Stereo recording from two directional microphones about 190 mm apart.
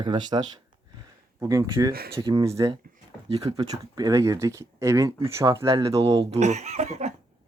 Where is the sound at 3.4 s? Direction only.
25° right (ahead or behind).